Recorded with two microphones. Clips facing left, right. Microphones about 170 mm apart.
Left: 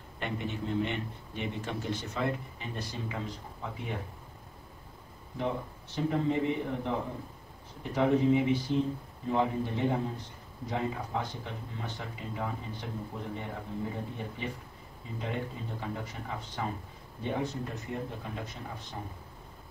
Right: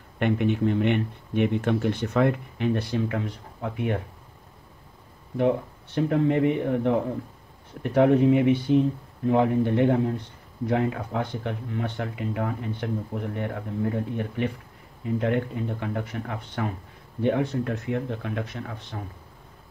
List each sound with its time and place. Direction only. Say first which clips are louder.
0.2 s speech: right 12 dB; 65° right (ahead or behind)
5.4 s speech: right 10 dB; 60° right (ahead or behind)